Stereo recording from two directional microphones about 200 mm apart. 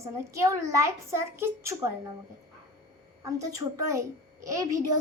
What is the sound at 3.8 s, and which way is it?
A child's voice, 15° right (ahead or behind).